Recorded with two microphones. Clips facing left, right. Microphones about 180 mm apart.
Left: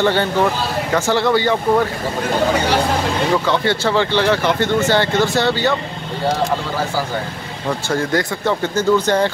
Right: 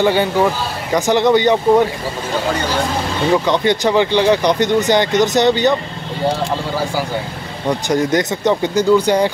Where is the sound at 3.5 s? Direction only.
15° right (ahead or behind).